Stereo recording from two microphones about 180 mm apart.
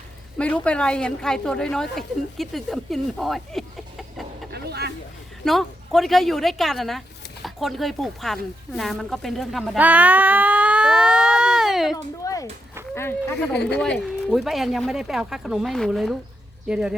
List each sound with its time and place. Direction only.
0.3 s a woman's voice: 5° left (ahead or behind)
4.5 s vehicle: 65° right (ahead or behind)
5.5 s a woman's voice: centre (ahead or behind)
8.7 s a sound: centre (ahead or behind)
12.2 s a sound: 20° left (ahead or behind)
12.9 s a woman's voice: 15° left (ahead or behind); by 17.0 s 5° right (ahead or behind)